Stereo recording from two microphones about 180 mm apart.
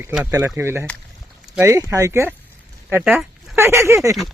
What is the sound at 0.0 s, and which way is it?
Speech, 5° right (ahead or behind).